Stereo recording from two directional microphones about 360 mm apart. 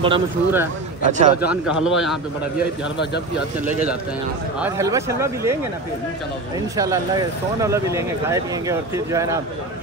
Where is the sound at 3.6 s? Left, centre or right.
Centre.